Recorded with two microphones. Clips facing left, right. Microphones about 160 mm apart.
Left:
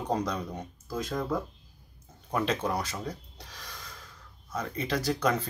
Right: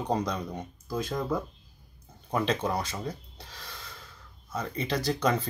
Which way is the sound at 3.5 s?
10° right (ahead or behind).